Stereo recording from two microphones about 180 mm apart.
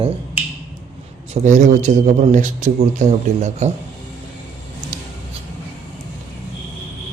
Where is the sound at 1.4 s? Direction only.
45° right (ahead or behind).